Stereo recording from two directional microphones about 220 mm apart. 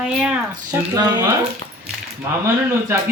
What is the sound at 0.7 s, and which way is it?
Speech, 15° right (ahead or behind).